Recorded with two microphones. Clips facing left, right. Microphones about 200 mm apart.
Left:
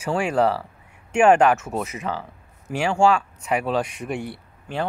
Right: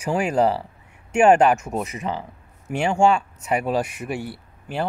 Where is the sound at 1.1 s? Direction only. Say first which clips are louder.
Right 1 dB; 40° right (ahead or behind).